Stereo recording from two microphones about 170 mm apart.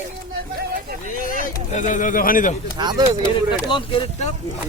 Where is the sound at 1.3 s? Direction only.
50° left (ahead or behind).